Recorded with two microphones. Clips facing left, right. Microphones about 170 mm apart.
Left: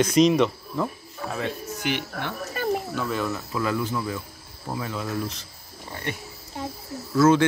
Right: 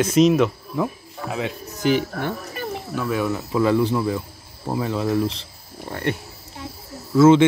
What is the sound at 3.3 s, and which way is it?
Speech, 25° right (ahead or behind).